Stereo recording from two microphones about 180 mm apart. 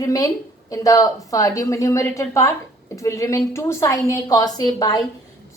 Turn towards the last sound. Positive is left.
turn(degrees=20)  # may be behind; listen again after turning